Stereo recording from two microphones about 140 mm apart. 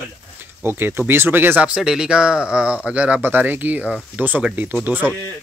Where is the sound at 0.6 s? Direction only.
15° right (ahead or behind).